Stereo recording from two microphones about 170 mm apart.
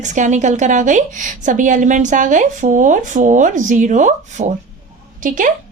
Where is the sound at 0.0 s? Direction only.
45° right (ahead or behind).